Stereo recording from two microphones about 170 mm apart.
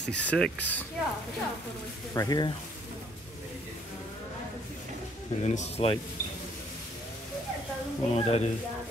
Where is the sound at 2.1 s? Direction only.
20° left (ahead or behind).